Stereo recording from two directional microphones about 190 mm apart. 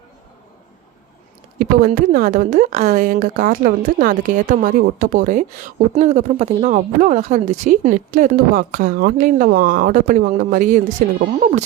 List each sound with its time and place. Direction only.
1.9 s a woman's voice: 50° right (ahead or behind)